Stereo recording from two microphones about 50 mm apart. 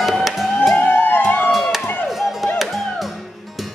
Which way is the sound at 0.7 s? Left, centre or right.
Left.